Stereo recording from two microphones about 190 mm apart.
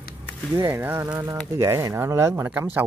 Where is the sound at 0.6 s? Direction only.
10° right (ahead or behind).